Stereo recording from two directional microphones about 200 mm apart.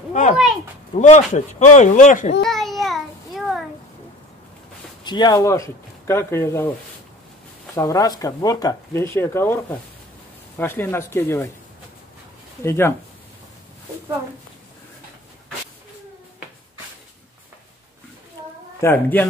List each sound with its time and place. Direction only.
0.1 s speech: 40° left (ahead or behind)
2.4 s child singing: centre (ahead or behind)
5.0 s speech: 20° left (ahead or behind)
7.7 s speech: 15° left (ahead or behind)
12.6 s speech: 15° left (ahead or behind)
18.8 s speech: 10° left (ahead or behind)